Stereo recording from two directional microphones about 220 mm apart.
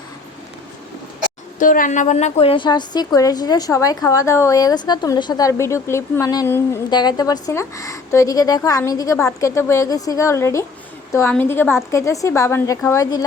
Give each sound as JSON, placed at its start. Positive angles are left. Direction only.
{"t": 1.5, "sound": "a woman's voice", "side_deg": 35}